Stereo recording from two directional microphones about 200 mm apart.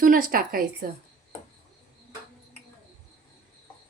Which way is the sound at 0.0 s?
45° right (ahead or behind).